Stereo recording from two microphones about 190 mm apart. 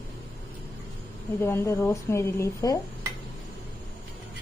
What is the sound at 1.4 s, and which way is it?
A woman's voice, 10° left (ahead or behind).